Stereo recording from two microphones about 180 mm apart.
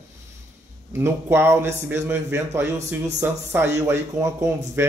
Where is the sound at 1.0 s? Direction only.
15° right (ahead or behind).